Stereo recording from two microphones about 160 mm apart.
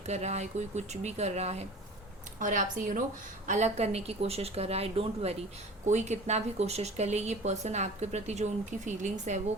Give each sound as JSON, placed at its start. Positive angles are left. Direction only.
{"t": 0.0, "sound": "speech", "side_deg": -45}
{"t": 2.4, "sound": "speech", "side_deg": -55}
{"t": 3.4, "sound": "a woman's voice", "side_deg": -45}